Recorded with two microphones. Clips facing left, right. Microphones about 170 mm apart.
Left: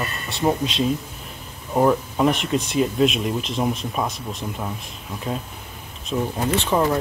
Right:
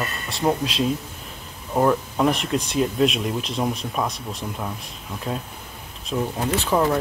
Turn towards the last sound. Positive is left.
turn(degrees=0)  # may be behind; listen again after turning